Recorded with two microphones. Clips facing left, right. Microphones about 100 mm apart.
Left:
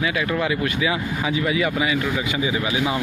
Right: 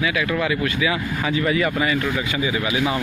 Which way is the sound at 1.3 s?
10° left (ahead or behind).